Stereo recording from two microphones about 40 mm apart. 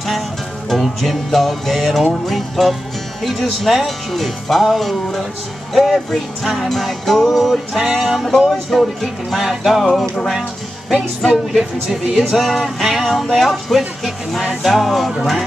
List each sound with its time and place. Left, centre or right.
0.7 s speech: centre
10.9 s speech: centre